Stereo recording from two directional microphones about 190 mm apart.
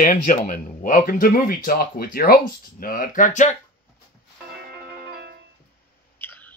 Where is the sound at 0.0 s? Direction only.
45° left (ahead or behind).